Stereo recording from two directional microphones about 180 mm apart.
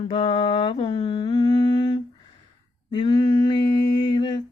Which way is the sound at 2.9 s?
25° left (ahead or behind).